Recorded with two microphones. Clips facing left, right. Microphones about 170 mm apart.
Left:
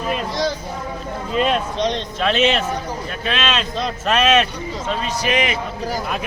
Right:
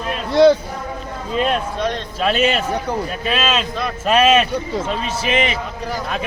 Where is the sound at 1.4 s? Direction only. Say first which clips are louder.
Even; centre (ahead or behind).